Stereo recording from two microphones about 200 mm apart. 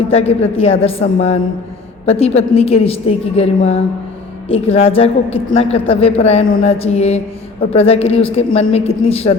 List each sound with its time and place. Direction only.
0.1 s mantra: 30° left (ahead or behind)
0.5 s a woman's voice: 30° left (ahead or behind)
6.6 s mantra: 30° left (ahead or behind)
7.7 s a woman's voice: 30° left (ahead or behind)